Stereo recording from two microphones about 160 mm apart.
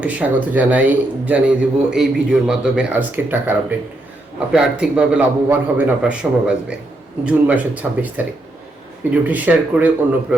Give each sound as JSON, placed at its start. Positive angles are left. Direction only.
{"t": 0.0, "sound": "a man's voice", "side_deg": -10}